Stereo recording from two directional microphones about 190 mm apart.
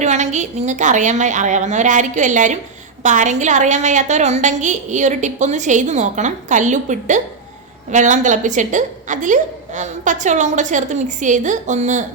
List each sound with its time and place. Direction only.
0.0 s a woman's voice: 35° right (ahead or behind)